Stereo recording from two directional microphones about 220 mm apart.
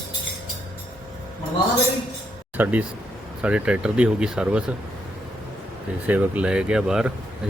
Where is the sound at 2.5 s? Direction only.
5° right (ahead or behind).